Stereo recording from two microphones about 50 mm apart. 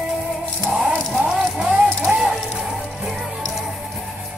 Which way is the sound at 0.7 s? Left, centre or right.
Centre.